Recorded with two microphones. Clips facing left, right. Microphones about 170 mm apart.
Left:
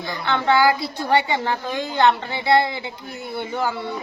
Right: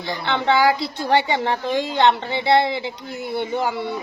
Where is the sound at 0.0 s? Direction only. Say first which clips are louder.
Even; 25° right (ahead or behind).